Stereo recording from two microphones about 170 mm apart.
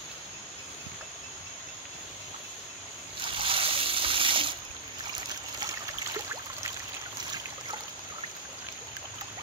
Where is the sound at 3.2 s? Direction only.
30° right (ahead or behind).